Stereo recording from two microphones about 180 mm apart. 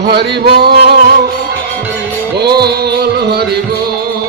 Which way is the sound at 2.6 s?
60° right (ahead or behind).